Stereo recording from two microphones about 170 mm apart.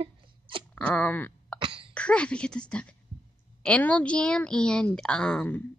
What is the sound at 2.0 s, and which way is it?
A woman's voice, 5° left (ahead or behind).